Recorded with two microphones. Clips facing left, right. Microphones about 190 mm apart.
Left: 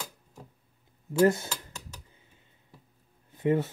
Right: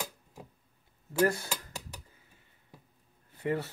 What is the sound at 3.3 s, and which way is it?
Speech, 20° left (ahead or behind).